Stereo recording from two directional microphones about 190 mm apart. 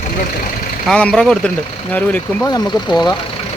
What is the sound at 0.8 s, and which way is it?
Speech, 5° left (ahead or behind).